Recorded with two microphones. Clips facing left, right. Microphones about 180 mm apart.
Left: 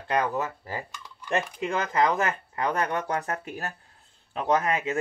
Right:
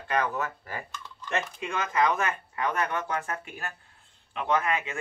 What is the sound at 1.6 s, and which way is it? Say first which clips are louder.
Speech: left 1 dB; 30° left (ahead or behind).